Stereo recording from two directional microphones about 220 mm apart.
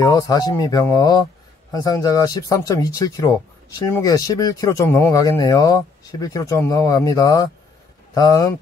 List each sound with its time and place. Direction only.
0.0 s speech: 15° left (ahead or behind)